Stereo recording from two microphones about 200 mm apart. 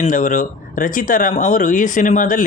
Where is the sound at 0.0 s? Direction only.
40° left (ahead or behind).